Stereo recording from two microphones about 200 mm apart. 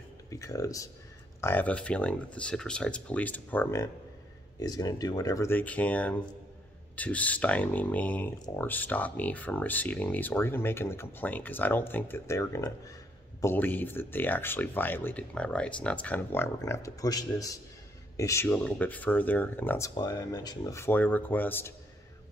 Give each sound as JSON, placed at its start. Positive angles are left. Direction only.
{"t": 0.3, "sound": "speech", "side_deg": 15}